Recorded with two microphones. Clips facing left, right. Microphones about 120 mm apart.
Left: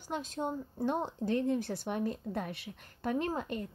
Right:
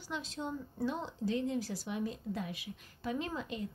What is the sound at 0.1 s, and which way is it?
A woman's voice, 45° left (ahead or behind).